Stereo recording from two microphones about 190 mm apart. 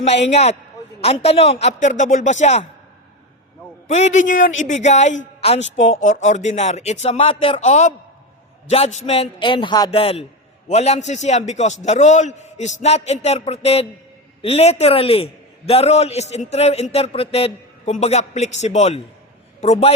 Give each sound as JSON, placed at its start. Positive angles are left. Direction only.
{"t": 0.3, "sound": "a man's voice", "side_deg": 35}
{"t": 3.8, "sound": "a man's voice", "side_deg": 35}
{"t": 5.5, "sound": "a woman's voice", "side_deg": 75}
{"t": 6.0, "sound": "a man's voice", "side_deg": 40}